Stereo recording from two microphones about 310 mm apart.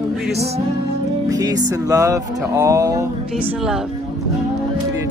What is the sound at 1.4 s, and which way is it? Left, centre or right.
Music, centre.